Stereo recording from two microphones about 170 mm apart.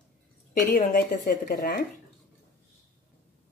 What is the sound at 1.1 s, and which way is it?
Speech, 50° left (ahead or behind).